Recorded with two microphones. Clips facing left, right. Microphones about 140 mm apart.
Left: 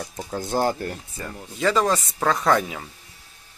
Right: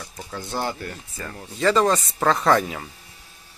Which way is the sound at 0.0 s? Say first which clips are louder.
Left 5 dB; 35° left (ahead or behind).